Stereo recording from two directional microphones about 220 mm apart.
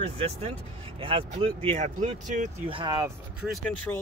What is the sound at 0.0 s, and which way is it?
Speech, 25° right (ahead or behind).